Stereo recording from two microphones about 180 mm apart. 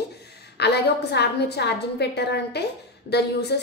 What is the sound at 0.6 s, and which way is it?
A woman's voice, 65° left (ahead or behind).